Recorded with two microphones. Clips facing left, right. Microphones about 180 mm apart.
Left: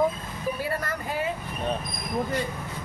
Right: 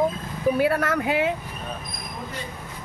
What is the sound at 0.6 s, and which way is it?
Speech, 70° right (ahead or behind).